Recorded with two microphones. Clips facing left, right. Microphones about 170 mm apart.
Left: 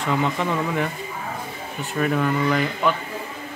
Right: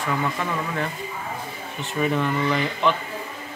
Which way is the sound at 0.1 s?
20° left (ahead or behind).